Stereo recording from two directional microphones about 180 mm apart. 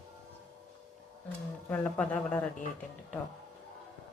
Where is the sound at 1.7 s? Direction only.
10° left (ahead or behind).